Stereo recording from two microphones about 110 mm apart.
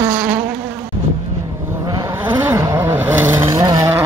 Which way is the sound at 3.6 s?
35° right (ahead or behind).